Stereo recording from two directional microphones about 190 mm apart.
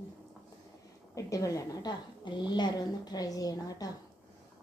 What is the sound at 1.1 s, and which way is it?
A woman's voice, 15° left (ahead or behind).